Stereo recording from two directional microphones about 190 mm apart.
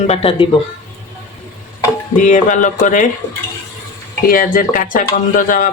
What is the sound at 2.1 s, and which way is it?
Speech, 40° left (ahead or behind).